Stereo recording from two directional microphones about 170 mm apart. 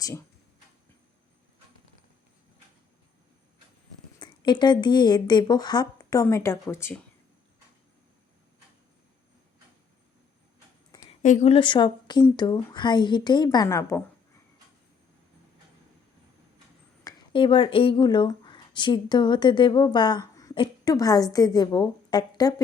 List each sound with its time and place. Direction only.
4.2 s speech: 25° left (ahead or behind)
11.2 s speech: 45° left (ahead or behind); by 14.0 s 15° left (ahead or behind)
17.0 s speech: 25° left (ahead or behind)